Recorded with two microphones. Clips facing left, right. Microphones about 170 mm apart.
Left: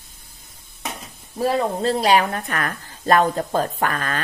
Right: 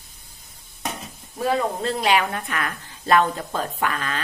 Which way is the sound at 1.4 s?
35° left (ahead or behind).